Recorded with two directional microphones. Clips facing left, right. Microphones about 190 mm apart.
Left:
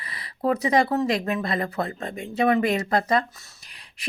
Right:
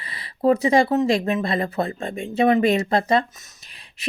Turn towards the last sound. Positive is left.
turn(degrees=-25)  # may be behind; listen again after turning